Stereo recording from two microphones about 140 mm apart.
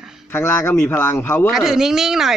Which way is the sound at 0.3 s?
15° left (ahead or behind).